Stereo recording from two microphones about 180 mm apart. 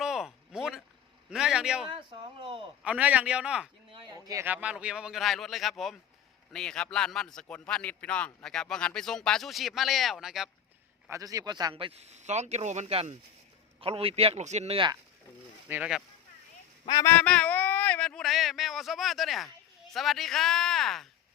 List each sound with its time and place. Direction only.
0.0 s a sound: centre (ahead or behind)
1.3 s a man's voice: 5° right (ahead or behind)
1.9 s a sound: 25° right (ahead or behind)
2.8 s a man's voice: 5° right (ahead or behind)
4.1 s a man's voice: 20° right (ahead or behind); by 10.5 s centre (ahead or behind)
11.1 s speech: 20° right (ahead or behind)
15.7 s a man's voice: 5° right (ahead or behind)
16.9 s a man's voice: 15° left (ahead or behind)